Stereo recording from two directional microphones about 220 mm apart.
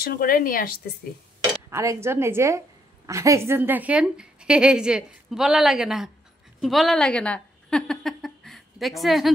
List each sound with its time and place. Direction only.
0.0 s speech: 40° left (ahead or behind)
1.7 s a woman's voice: 15° right (ahead or behind)